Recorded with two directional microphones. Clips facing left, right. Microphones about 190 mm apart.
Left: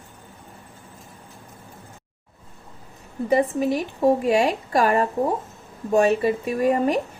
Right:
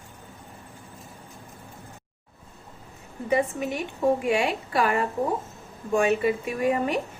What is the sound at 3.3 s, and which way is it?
A woman's voice, 35° left (ahead or behind).